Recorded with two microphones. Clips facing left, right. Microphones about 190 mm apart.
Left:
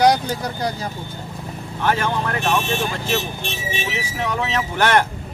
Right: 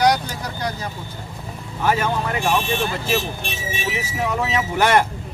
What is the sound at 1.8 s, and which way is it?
Speech, 5° right (ahead or behind).